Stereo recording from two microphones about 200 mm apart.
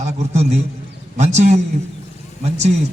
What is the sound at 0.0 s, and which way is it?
A man's voice, 35° right (ahead or behind).